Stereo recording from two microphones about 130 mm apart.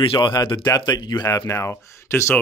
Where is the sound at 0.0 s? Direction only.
40° left (ahead or behind); by 2.3 s 20° left (ahead or behind).